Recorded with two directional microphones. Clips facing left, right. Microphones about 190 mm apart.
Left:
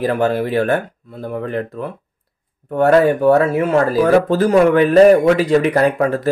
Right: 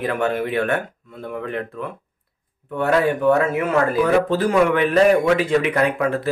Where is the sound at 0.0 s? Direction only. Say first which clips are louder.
Left 5 dB; 35° left (ahead or behind).